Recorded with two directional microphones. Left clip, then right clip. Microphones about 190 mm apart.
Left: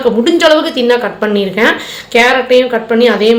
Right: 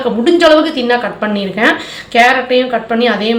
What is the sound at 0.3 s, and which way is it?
A woman's voice, 25° left (ahead or behind).